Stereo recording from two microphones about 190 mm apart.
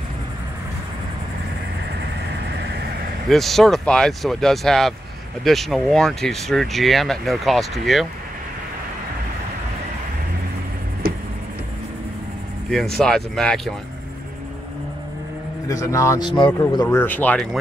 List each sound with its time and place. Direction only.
2.5 s vehicle: 60° right (ahead or behind)
3.3 s speech: centre (ahead or behind)
12.6 s speech: centre (ahead or behind)
15.7 s speech: 15° left (ahead or behind)